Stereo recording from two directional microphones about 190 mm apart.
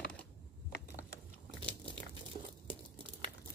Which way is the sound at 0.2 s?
15° left (ahead or behind).